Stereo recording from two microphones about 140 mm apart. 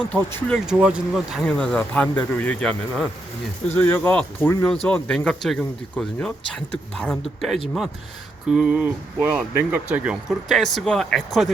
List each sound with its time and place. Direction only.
0.1 s speech: 15° left (ahead or behind)
0.7 s speech: 5° right (ahead or behind)
1.5 s speech: 5° left (ahead or behind)
3.7 s speech: 15° left (ahead or behind)